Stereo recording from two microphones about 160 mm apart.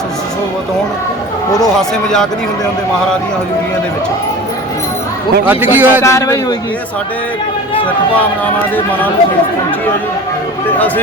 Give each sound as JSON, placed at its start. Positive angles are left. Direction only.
{"t": 5.5, "sound": "a man's voice", "side_deg": -10}
{"t": 6.0, "sound": "a man's voice", "side_deg": 20}
{"t": 10.8, "sound": "speech", "side_deg": 10}